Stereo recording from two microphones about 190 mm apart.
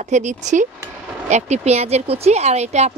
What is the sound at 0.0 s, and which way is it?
A woman's voice, 40° right (ahead or behind).